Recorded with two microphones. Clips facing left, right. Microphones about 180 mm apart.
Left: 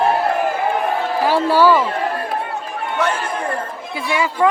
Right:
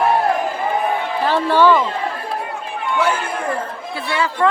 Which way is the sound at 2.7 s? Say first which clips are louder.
Right 1 dB; 40° left (ahead or behind).